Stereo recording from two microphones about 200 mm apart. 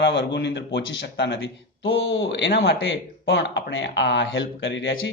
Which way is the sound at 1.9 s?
70° left (ahead or behind).